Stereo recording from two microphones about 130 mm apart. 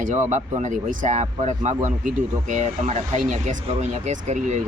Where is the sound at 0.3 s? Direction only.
65° right (ahead or behind).